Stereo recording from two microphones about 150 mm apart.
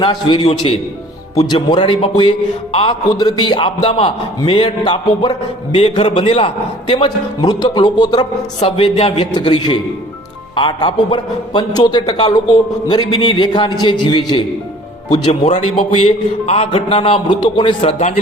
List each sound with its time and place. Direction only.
0.0 s a man's voice: 35° left (ahead or behind)
8.6 s a man's voice: 40° left (ahead or behind)
15.1 s a man's voice: 45° left (ahead or behind); by 17.7 s 30° left (ahead or behind)
17.7 s speech: 50° left (ahead or behind)